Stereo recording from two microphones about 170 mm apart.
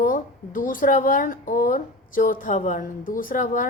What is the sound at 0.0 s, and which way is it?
A woman's voice, 55° left (ahead or behind).